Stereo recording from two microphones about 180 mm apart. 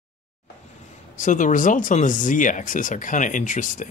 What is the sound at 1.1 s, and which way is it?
Speech, 45° left (ahead or behind).